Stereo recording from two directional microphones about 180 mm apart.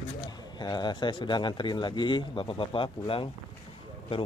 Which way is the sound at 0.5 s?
25° left (ahead or behind).